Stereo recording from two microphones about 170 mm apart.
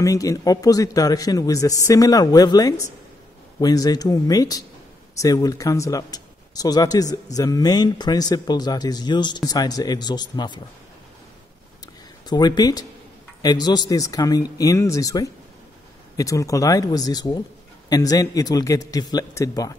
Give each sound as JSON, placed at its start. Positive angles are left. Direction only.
{"t": 0.0, "sound": "speech", "side_deg": 20}
{"t": 12.3, "sound": "speech", "side_deg": 25}